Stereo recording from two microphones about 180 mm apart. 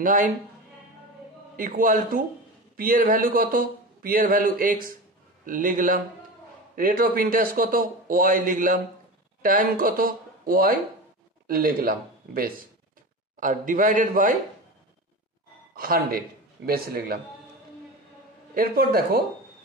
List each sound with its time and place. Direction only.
0.0 s speech: 50° right (ahead or behind)
1.6 s speech: 50° right (ahead or behind)
15.7 s speech: 55° right (ahead or behind)
18.5 s speech: 55° right (ahead or behind)